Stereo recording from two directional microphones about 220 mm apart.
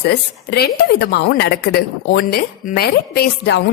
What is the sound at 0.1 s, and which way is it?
A woman's voice, 50° left (ahead or behind).